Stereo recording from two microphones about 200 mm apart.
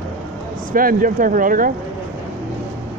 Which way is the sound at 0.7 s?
45° right (ahead or behind).